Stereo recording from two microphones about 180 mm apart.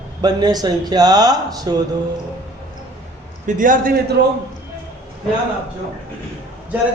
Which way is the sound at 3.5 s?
50° right (ahead or behind).